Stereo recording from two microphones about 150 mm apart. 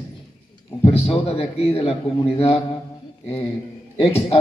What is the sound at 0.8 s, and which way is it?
A man's voice, 40° left (ahead or behind).